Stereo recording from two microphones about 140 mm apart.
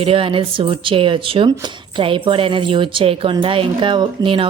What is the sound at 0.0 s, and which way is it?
A woman's voice, 40° right (ahead or behind).